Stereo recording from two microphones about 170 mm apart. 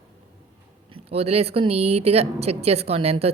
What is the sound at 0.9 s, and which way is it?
Speech, 35° right (ahead or behind).